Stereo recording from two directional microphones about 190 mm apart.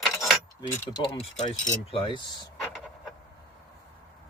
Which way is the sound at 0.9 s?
25° left (ahead or behind).